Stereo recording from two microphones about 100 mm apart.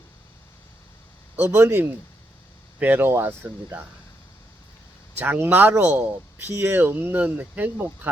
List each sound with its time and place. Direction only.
1.5 s speech: 25° right (ahead or behind)
5.1 s speech: 20° right (ahead or behind)